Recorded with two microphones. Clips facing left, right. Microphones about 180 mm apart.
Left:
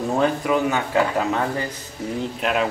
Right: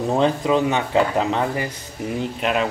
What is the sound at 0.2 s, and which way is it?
Speech, 25° right (ahead or behind).